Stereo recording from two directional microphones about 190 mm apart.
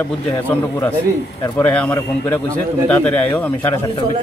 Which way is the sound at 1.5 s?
10° left (ahead or behind).